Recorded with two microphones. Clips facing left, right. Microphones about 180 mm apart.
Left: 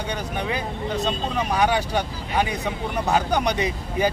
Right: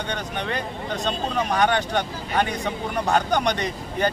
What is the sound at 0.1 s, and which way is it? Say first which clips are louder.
Speech: left 2 dB; 5° left (ahead or behind).